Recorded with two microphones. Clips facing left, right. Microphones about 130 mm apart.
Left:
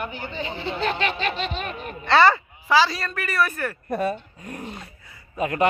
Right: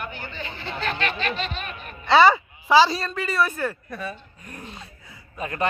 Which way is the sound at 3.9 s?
45° left (ahead or behind).